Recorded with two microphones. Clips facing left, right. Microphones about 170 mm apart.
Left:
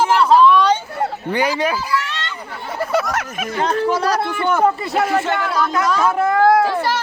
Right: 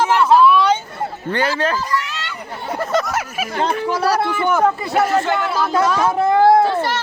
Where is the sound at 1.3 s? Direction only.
15° left (ahead or behind).